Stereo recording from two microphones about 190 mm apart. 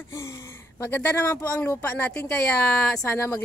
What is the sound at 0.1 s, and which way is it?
Speech, 15° left (ahead or behind).